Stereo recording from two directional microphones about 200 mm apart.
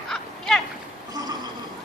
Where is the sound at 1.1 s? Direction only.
20° right (ahead or behind).